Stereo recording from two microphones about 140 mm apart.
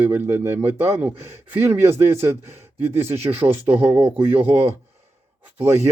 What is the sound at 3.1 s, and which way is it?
Speech, 15° right (ahead or behind).